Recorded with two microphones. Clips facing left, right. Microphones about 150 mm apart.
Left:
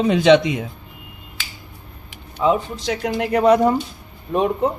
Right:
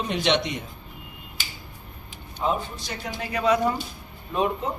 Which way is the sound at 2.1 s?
90° left.